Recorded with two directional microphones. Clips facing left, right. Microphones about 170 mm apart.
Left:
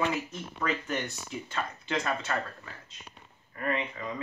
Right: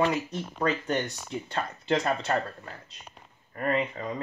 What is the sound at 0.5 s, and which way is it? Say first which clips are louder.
Speech: right 4 dB; 35° right (ahead or behind).